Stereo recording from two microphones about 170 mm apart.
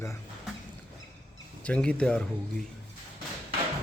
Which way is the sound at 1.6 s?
5° left (ahead or behind).